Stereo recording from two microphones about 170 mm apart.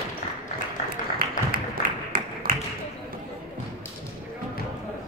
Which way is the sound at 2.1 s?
55° right (ahead or behind).